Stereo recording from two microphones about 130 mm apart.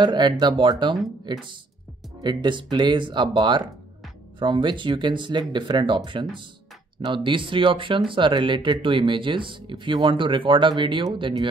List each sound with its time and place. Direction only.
0.0 s speech: 35° right (ahead or behind)
7.1 s speech: 40° right (ahead or behind)